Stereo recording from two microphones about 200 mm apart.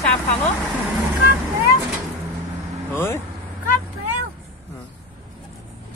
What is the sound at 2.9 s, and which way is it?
Speech, 10° left (ahead or behind).